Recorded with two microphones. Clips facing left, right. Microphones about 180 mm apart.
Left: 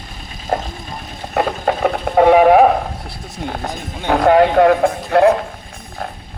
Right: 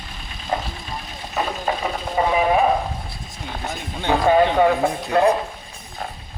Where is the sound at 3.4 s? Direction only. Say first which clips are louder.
Left 5 dB; 50° left (ahead or behind); by 5.3 s 65° left (ahead or behind).